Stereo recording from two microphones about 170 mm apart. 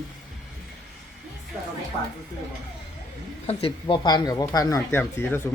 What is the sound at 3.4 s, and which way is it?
Speech, 35° left (ahead or behind).